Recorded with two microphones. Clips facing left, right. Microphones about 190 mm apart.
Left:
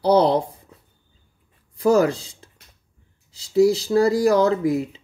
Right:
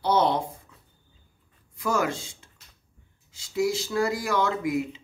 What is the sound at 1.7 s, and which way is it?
Speech, 35° left (ahead or behind).